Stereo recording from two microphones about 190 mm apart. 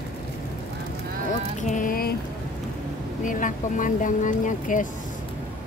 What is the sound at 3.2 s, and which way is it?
Speech, 45° left (ahead or behind).